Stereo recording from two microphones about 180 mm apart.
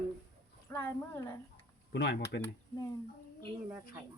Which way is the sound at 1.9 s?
65° left (ahead or behind).